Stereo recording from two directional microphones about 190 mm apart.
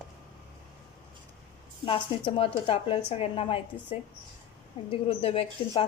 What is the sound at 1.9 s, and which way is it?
A woman's voice, 30° left (ahead or behind).